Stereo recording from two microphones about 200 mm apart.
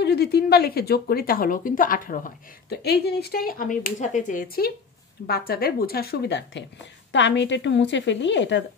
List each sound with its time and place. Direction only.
0.0 s speech: 55° left (ahead or behind)